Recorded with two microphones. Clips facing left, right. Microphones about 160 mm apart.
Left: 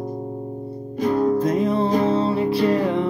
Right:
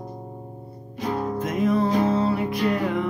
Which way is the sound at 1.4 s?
35° left (ahead or behind).